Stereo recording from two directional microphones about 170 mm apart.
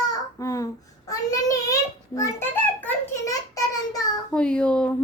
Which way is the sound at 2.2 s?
10° left (ahead or behind).